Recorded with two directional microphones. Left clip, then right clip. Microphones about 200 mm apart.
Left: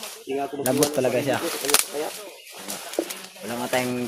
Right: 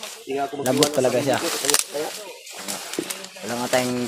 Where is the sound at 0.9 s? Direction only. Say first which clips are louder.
Right 2 dB; centre (ahead or behind).